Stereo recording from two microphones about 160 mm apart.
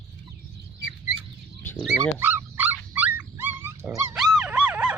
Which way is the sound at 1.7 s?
5° left (ahead or behind).